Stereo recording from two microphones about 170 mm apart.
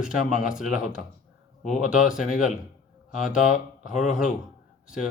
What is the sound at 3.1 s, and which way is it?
Speech, 5° right (ahead or behind).